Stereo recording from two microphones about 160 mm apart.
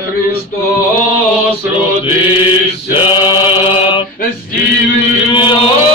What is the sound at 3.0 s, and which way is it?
Mantra, 35° left (ahead or behind).